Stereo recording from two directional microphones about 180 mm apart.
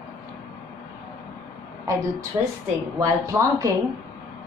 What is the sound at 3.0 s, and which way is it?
Speech, 20° right (ahead or behind).